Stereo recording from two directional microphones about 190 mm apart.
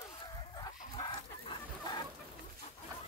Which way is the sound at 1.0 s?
25° left (ahead or behind).